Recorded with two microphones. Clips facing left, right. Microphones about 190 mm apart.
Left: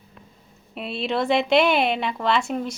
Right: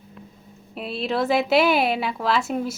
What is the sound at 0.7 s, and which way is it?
A woman's voice, centre (ahead or behind).